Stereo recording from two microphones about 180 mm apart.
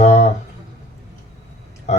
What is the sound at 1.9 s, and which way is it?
Speech, 40° left (ahead or behind).